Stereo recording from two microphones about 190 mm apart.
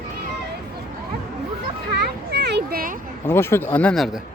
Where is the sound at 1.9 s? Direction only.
60° right (ahead or behind).